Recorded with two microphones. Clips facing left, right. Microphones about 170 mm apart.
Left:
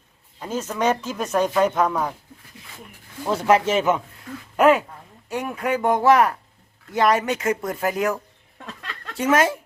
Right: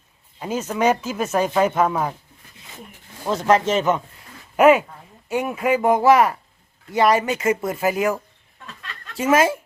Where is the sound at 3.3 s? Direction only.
10° left (ahead or behind).